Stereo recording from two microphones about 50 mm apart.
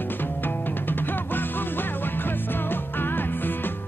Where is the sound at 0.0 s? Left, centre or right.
Left.